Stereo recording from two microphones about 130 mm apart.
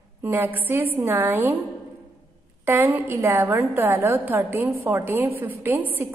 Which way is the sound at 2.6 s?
15° right (ahead or behind).